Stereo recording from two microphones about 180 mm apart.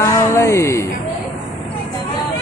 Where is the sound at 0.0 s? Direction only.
15° left (ahead or behind).